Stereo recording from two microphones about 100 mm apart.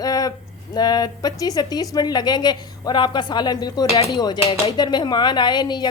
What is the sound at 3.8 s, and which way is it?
Chopping, 90° left.